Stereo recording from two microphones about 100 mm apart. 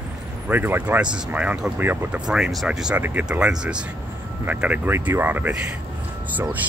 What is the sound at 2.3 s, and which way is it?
Speech, 5° right (ahead or behind).